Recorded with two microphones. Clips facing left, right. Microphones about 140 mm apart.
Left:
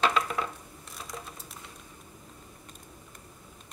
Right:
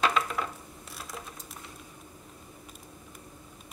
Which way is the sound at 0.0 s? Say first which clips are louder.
Left 1 dB; centre (ahead or behind).